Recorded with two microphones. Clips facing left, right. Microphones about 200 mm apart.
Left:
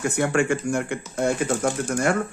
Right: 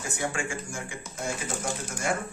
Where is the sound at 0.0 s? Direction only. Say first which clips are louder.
Left 10 dB; 65° left (ahead or behind).